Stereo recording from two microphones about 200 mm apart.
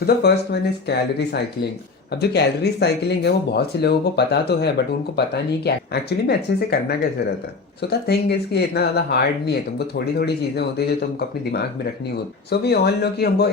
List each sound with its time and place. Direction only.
0.0 s speech: 55° left (ahead or behind)
12.5 s speech: 55° left (ahead or behind)